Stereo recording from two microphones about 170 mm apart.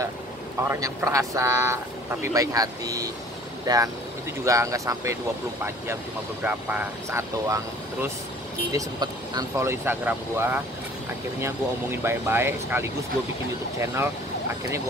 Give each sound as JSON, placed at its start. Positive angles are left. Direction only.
{"t": 0.7, "sound": "speech", "side_deg": -20}
{"t": 6.4, "sound": "speech", "side_deg": -10}